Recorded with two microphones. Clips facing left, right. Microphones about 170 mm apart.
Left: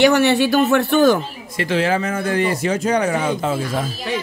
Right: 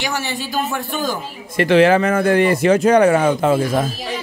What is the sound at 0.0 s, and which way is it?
Speech, 65° left (ahead or behind).